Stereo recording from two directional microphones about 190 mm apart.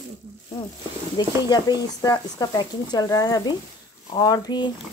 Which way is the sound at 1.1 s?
20° left (ahead or behind).